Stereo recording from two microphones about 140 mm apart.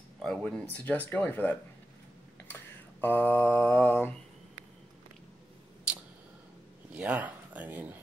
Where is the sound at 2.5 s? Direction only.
15° left (ahead or behind).